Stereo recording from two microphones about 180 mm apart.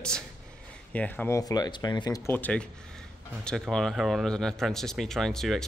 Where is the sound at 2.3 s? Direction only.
10° left (ahead or behind).